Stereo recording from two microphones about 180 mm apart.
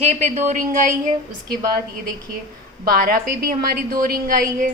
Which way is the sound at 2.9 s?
55° right (ahead or behind).